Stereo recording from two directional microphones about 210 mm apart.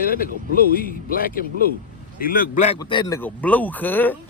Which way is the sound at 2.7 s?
20° left (ahead or behind).